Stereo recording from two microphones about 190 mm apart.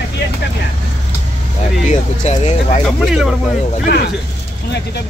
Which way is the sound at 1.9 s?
40° left (ahead or behind).